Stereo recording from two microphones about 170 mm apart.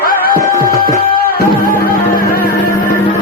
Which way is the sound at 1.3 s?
60° left (ahead or behind).